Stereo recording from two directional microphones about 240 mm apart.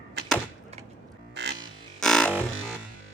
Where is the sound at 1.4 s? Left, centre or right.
Right.